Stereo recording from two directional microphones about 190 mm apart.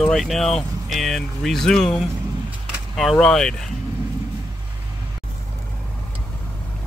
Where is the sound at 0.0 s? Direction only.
Centre (ahead or behind).